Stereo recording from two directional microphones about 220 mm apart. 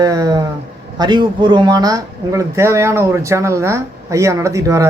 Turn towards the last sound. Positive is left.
turn(degrees=-15)  # may be behind; listen again after turning